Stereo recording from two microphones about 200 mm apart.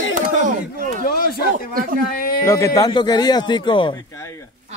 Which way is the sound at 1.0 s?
45° left (ahead or behind).